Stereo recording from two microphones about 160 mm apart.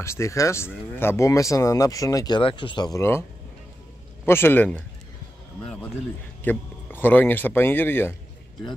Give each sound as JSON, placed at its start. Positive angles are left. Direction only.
{"t": 0.0, "sound": "speech", "side_deg": 20}
{"t": 4.3, "sound": "speech", "side_deg": 15}